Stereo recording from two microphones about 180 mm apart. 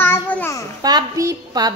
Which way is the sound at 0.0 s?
10° left (ahead or behind).